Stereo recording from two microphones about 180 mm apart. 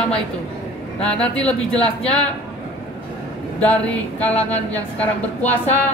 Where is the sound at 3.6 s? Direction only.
5° left (ahead or behind).